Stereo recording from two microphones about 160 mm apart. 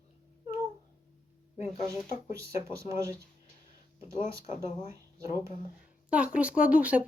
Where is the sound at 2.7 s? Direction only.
20° right (ahead or behind).